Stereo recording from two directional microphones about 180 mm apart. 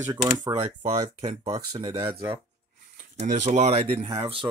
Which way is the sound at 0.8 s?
35° right (ahead or behind).